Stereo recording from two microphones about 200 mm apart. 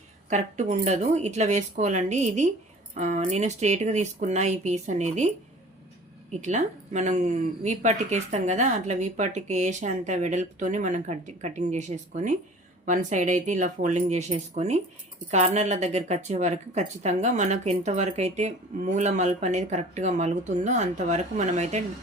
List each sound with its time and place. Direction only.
0.3 s speech: 35° right (ahead or behind)
6.4 s speech: 35° right (ahead or behind)